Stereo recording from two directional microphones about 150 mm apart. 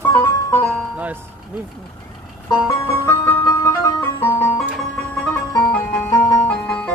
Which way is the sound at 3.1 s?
15° left (ahead or behind).